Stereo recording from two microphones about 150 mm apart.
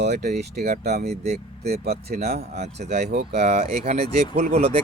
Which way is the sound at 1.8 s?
90° right.